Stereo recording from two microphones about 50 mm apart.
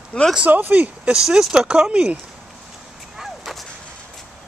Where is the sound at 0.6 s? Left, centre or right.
Right.